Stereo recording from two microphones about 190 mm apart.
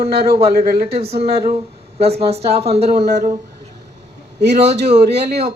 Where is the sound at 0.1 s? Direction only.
55° right (ahead or behind).